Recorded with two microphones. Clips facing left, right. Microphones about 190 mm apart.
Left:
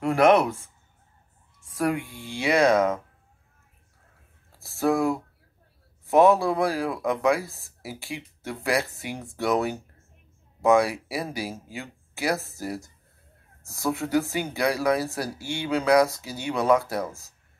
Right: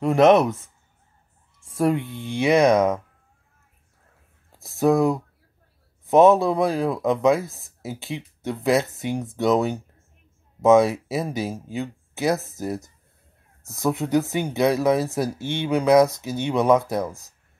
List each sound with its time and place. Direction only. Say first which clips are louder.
0.0 s speech: right 3 dB; 20° right (ahead or behind)
1.6 s speech: right 4 dB; 25° right (ahead or behind)
4.6 s speech: right 4 dB; 20° right (ahead or behind)